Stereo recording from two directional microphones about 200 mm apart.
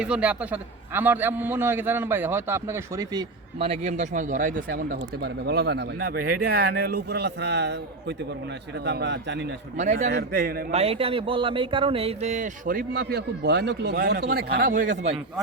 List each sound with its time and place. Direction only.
0.0 s a man's voice: 5° right (ahead or behind); by 9.5 s 60° right (ahead or behind)
9.7 s a man's voice: 35° right (ahead or behind)
10.1 s a man's voice: 55° right (ahead or behind)
10.7 s a man's voice: 30° right (ahead or behind)